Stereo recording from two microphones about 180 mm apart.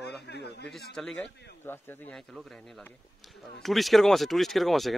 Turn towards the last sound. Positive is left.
turn(degrees=0)  # may be behind; listen again after turning